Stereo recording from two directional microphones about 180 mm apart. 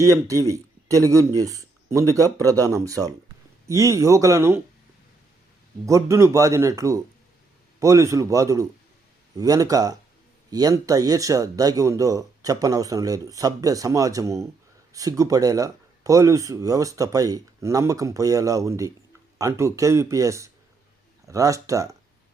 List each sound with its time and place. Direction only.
0.0 s speech: 15° right (ahead or behind)
5.8 s speech: 15° right (ahead or behind)